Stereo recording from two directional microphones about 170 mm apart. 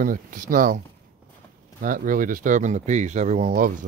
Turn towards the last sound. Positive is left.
turn(degrees=-50)  # may be behind; listen again after turning